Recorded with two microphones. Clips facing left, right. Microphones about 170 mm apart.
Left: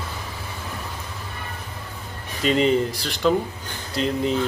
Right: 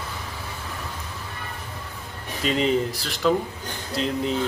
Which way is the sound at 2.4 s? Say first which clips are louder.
Left 3 dB; centre (ahead or behind).